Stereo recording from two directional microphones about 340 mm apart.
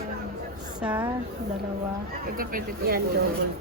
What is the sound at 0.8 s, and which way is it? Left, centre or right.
Speech, centre.